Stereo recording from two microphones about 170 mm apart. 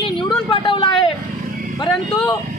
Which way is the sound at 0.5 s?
30° left (ahead or behind).